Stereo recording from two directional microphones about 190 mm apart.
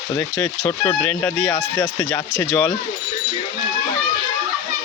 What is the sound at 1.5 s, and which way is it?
Speech, 15° left (ahead or behind).